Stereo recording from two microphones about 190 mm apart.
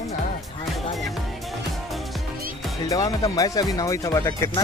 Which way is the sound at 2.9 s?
20° left (ahead or behind).